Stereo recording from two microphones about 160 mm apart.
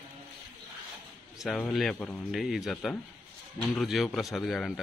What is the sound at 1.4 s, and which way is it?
Speech, 5° left (ahead or behind).